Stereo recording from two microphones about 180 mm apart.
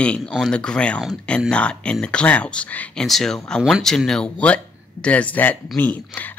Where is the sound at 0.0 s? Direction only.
5° left (ahead or behind).